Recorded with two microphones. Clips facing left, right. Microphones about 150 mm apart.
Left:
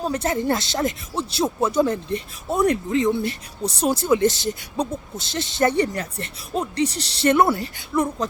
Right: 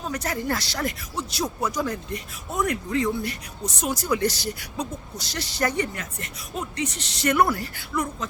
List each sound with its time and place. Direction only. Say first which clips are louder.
0.0 s speech: left 6 dB; 25° left (ahead or behind)